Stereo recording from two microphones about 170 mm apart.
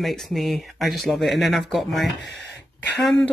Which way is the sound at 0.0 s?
Centre (ahead or behind).